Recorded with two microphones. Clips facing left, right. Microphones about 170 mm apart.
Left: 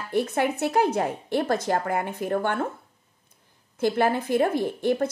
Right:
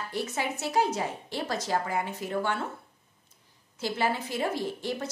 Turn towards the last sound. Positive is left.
turn(degrees=55)  # may be behind; listen again after turning